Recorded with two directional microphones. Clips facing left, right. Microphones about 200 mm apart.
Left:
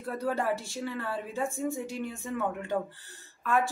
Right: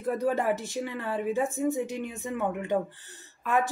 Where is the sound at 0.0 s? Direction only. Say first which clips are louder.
Right 4 dB; 20° right (ahead or behind).